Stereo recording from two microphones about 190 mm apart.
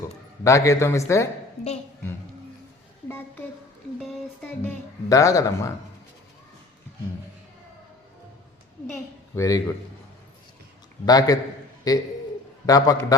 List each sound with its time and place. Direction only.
0.4 s speech: 15° left (ahead or behind)
3.1 s a sound: 10° left (ahead or behind)
4.6 s speech: 15° left (ahead or behind)
9.3 s speech: 15° left (ahead or behind)
11.0 s a man's voice: 20° left (ahead or behind)